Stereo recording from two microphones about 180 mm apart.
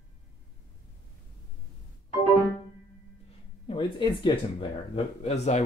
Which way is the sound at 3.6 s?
30° left (ahead or behind).